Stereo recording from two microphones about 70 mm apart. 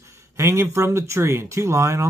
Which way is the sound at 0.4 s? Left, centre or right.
Right.